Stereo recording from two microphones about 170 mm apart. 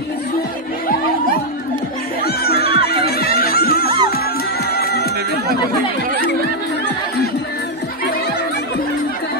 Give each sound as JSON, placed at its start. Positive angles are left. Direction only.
{"t": 2.2, "sound": "music", "side_deg": 65}